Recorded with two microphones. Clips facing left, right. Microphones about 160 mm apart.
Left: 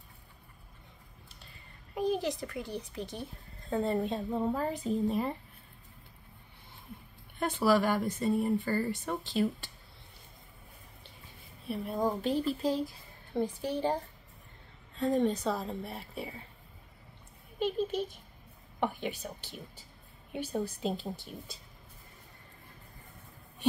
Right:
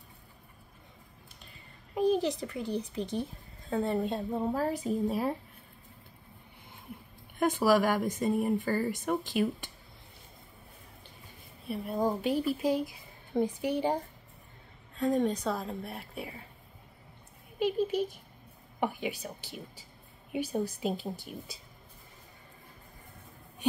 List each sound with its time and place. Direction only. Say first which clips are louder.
2.4 s speech: right 4 dB; 15° right (ahead or behind)
3.6 s speech: even; centre (ahead or behind)
7.3 s speech: right 2 dB; 10° right (ahead or behind)
11.7 s speech: right 1 dB; centre (ahead or behind)
15.0 s speech: even; centre (ahead or behind)
17.6 s speech: right 3 dB; 10° right (ahead or behind)